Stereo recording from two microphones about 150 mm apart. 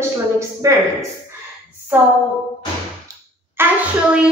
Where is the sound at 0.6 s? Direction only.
20° right (ahead or behind).